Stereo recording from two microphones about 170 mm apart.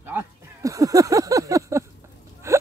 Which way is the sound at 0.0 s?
15° right (ahead or behind).